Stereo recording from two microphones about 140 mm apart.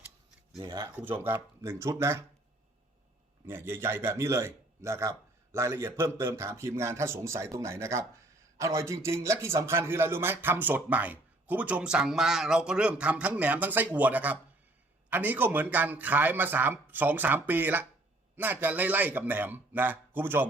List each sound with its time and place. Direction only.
0.6 s speech: 35° right (ahead or behind)
0.9 s a man's voice: 15° right (ahead or behind)
3.4 s a man's voice: 15° right (ahead or behind)